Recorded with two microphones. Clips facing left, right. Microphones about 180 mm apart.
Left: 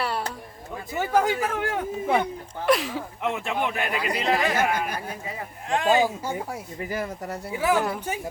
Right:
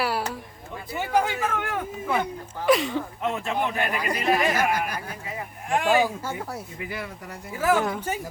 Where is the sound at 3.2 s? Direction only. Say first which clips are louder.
Left 1 dB; 15° left (ahead or behind).